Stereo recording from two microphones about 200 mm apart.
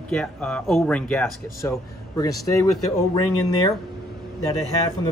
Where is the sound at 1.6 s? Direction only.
15° left (ahead or behind).